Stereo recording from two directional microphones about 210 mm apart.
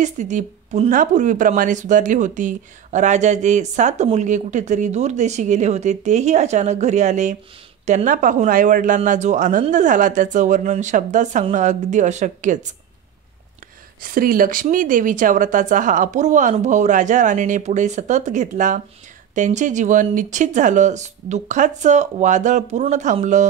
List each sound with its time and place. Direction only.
0.0 s a woman's voice: 35° right (ahead or behind)
14.0 s a woman's voice: 40° right (ahead or behind)